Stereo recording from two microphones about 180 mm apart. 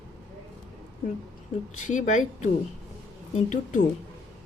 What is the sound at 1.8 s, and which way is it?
Speech, 45° left (ahead or behind).